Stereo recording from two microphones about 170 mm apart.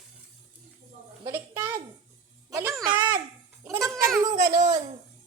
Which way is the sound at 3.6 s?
15° right (ahead or behind).